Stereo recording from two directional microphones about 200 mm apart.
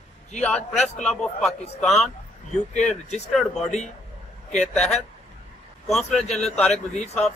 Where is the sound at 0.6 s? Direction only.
35° left (ahead or behind).